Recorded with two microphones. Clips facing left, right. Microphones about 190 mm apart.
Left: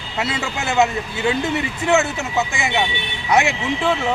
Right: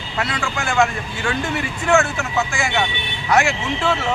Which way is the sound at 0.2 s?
20° left (ahead or behind).